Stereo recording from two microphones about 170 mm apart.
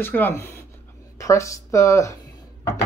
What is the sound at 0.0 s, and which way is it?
Speech, 10° left (ahead or behind).